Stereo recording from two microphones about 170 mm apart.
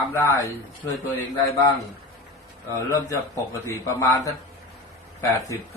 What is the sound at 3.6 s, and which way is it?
Speech, 15° left (ahead or behind).